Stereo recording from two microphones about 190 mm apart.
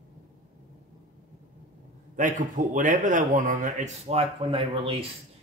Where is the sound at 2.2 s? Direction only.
40° right (ahead or behind).